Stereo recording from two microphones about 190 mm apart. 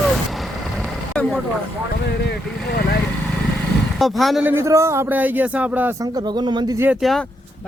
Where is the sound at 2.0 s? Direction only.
60° left (ahead or behind).